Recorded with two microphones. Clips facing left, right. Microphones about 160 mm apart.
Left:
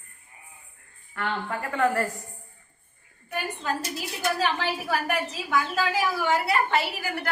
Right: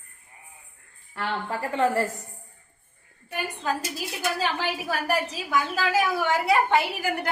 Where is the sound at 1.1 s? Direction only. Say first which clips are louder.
Even; 30° right (ahead or behind).